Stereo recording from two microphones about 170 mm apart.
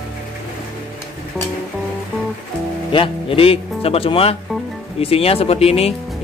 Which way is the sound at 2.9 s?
30° left (ahead or behind).